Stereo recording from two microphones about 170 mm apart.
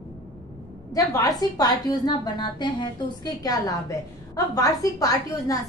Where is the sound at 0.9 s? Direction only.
20° left (ahead or behind).